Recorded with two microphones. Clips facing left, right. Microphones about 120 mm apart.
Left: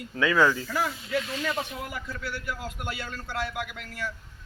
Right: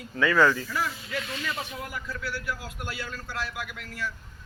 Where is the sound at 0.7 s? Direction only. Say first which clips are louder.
Left 3 dB; 35° left (ahead or behind).